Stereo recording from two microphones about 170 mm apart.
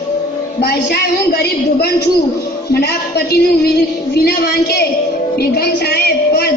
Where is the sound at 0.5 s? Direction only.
70° left (ahead or behind).